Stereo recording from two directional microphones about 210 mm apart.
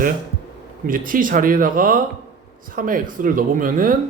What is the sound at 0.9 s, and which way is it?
Speech, 40° right (ahead or behind).